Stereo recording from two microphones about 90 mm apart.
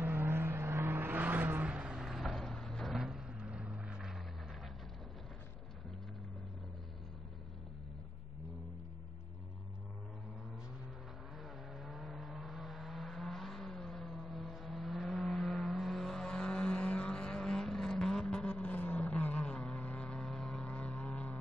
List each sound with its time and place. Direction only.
0.0 s vehicle: 25° right (ahead or behind); by 4.2 s 10° right (ahead or behind)
11.7 s vehicle: centre (ahead or behind); by 21.4 s 15° left (ahead or behind)